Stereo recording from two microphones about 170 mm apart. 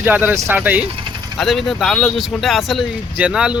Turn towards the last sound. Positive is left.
turn(degrees=-5)  # may be behind; listen again after turning